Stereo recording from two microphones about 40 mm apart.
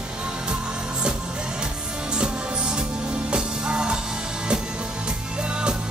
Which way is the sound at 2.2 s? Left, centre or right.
Right.